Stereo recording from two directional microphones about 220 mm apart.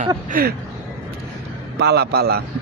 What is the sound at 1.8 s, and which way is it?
Speech, 50° right (ahead or behind).